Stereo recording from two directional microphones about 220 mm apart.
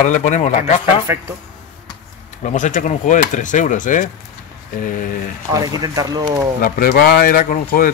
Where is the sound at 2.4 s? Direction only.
35° left (ahead or behind).